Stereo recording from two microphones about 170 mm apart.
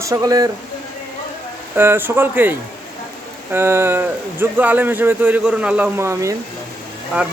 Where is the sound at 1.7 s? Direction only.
10° right (ahead or behind).